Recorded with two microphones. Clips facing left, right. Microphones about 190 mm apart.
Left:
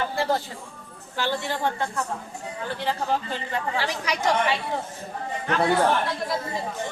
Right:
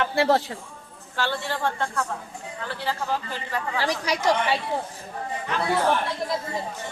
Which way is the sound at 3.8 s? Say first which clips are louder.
Right 6 dB; 35° right (ahead or behind).